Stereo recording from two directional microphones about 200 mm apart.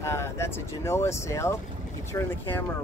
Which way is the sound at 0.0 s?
15° left (ahead or behind).